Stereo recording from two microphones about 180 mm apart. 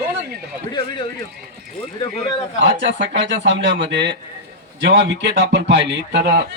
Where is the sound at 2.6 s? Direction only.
85° right.